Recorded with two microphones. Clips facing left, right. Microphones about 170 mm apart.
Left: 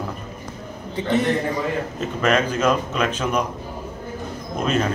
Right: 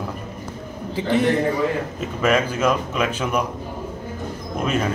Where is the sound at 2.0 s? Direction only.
5° right (ahead or behind).